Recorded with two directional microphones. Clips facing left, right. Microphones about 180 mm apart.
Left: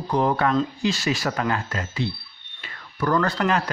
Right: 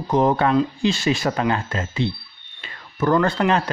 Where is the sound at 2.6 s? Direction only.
25° right (ahead or behind).